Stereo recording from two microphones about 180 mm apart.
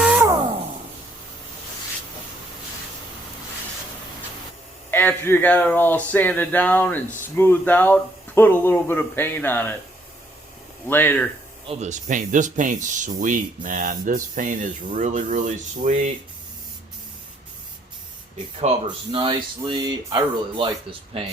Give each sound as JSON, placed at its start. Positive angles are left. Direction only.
{"t": 0.0, "sound": "music", "side_deg": -5}
{"t": 4.9, "sound": "speech", "side_deg": 10}
{"t": 10.8, "sound": "speech", "side_deg": 10}
{"t": 11.7, "sound": "speech", "side_deg": -40}
{"t": 18.9, "sound": "speech", "side_deg": -25}